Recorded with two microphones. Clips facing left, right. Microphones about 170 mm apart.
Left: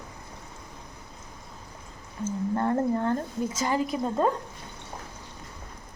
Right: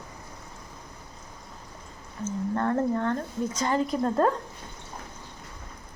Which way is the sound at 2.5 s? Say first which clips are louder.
Even; 20° left (ahead or behind).